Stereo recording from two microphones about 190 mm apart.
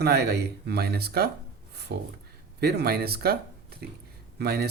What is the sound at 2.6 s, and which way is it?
Speech, 60° right (ahead or behind).